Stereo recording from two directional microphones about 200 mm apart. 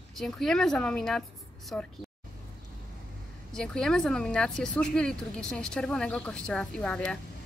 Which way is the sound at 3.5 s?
5° left (ahead or behind).